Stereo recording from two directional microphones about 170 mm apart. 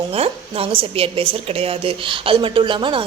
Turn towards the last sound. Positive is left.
turn(degrees=-30)  # may be behind; listen again after turning